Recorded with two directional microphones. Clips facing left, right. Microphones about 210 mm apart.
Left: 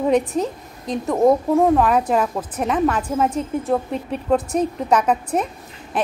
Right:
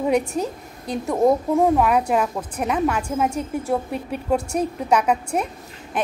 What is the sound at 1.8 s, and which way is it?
A woman's voice, 10° right (ahead or behind).